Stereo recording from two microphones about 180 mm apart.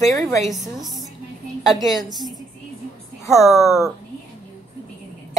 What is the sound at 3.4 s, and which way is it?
Speech, centre (ahead or behind).